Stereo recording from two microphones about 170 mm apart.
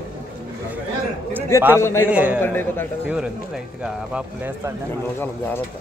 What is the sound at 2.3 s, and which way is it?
Speech, 10° left (ahead or behind).